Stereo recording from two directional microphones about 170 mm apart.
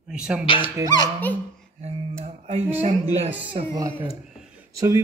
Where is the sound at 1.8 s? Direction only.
40° right (ahead or behind).